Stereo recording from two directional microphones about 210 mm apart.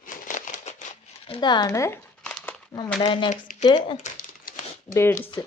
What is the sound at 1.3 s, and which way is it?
Crumpling, 20° left (ahead or behind).